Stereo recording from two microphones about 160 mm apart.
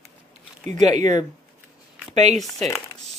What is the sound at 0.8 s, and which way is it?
Speech, 50° right (ahead or behind).